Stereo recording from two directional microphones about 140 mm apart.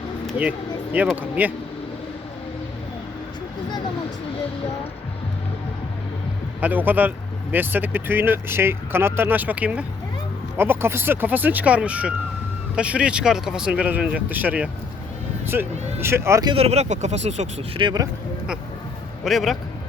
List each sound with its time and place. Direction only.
1.1 s speech: 10° right (ahead or behind)
6.6 s speech: 15° right (ahead or behind)
16.5 s speech: 45° right (ahead or behind)
17.7 s speech: 30° right (ahead or behind)
19.2 s a man's voice: centre (ahead or behind)